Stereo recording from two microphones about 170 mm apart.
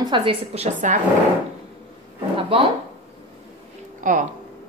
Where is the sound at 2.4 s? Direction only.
35° right (ahead or behind).